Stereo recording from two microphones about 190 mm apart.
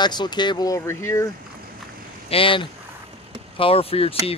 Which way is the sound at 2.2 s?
30° left (ahead or behind).